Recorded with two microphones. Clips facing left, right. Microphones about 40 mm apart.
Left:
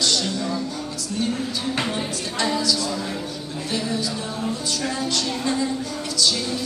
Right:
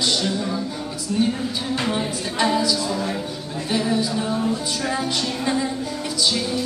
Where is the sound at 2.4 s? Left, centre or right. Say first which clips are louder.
Right 3 dB; centre.